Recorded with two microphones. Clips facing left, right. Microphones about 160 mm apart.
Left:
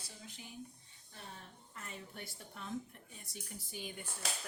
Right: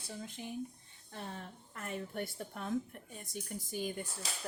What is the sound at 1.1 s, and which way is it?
A woman's voice, 65° right (ahead or behind).